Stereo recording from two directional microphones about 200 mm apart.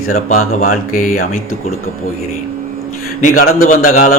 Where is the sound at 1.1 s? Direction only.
90° left.